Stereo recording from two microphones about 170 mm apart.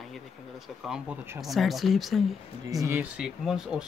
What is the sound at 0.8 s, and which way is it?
Speech, 5° right (ahead or behind).